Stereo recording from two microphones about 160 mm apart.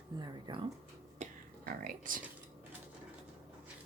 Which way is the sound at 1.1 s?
55° right (ahead or behind).